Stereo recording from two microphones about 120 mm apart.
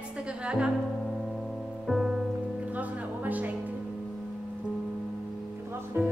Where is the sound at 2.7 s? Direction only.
10° right (ahead or behind).